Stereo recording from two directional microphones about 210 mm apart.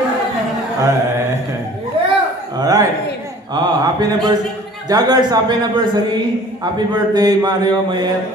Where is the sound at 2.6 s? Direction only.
15° right (ahead or behind).